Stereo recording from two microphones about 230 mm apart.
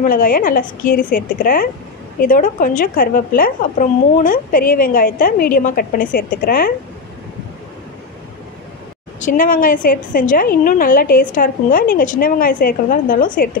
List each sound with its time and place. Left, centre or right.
0.0 s a woman's voice: left
9.2 s a woman's voice: left